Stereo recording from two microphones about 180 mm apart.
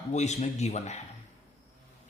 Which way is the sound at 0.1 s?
40° left (ahead or behind).